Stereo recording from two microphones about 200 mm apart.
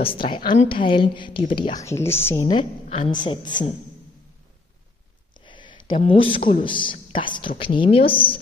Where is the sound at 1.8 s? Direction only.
15° left (ahead or behind).